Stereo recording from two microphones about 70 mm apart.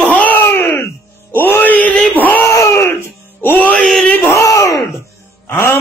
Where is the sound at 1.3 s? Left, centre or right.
Left.